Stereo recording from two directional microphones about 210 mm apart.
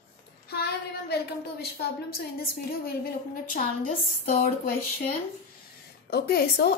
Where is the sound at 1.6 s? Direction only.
50° left (ahead or behind).